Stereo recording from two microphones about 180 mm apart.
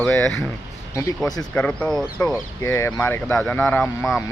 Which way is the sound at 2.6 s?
15° left (ahead or behind).